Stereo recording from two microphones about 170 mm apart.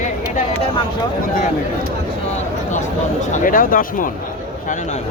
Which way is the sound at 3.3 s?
55° left (ahead or behind).